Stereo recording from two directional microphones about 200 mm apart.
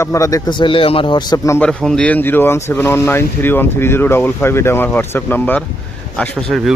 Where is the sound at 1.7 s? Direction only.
5° left (ahead or behind).